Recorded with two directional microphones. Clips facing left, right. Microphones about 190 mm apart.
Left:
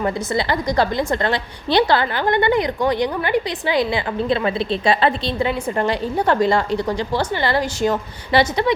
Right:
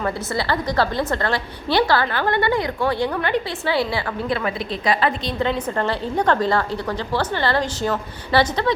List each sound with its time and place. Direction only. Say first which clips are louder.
0.0 s a woman's voice: left 3 dB; 15° left (ahead or behind)
5.4 s a woman's voice: even; 10° left (ahead or behind)